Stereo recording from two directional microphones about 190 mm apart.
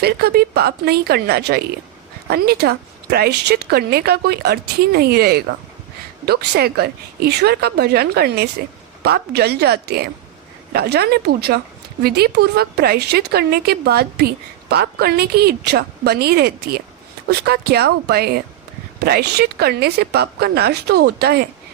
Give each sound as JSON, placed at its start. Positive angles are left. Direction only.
{"t": 0.0, "sound": "a woman's voice", "side_deg": -55}